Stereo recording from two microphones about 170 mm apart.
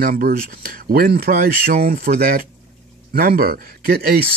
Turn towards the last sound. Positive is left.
turn(degrees=-65)  # may be behind; listen again after turning